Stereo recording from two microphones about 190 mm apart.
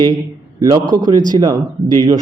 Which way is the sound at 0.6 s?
20° right (ahead or behind).